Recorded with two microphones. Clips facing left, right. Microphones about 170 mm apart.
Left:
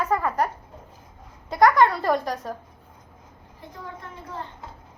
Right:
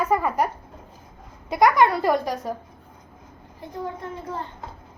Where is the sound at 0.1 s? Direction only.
10° right (ahead or behind).